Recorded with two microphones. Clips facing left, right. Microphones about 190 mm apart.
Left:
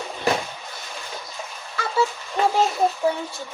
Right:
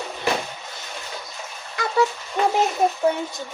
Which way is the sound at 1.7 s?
15° right (ahead or behind).